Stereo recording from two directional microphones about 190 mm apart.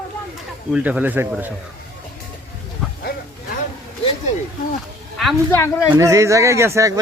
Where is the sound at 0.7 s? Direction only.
5° right (ahead or behind).